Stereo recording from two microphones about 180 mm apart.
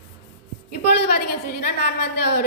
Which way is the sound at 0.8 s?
65° left (ahead or behind).